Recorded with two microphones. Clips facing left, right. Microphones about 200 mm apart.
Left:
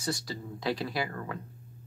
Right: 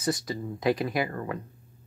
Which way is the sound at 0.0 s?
20° right (ahead or behind).